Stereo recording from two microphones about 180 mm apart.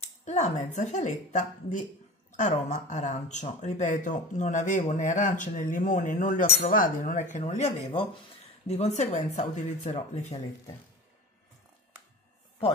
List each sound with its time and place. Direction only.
0.2 s a woman's voice: 40° left (ahead or behind)